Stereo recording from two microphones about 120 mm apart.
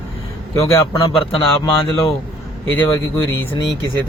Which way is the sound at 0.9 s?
35° left (ahead or behind).